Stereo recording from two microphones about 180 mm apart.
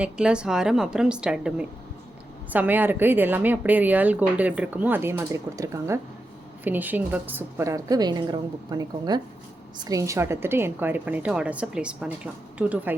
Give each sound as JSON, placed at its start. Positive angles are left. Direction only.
{"t": 0.0, "sound": "a woman's voice", "side_deg": -5}